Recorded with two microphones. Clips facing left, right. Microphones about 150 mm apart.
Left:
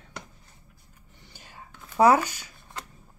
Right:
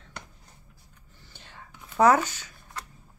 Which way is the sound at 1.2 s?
10° left (ahead or behind).